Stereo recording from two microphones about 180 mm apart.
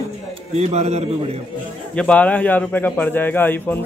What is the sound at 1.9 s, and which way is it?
A man's voice, 5° left (ahead or behind).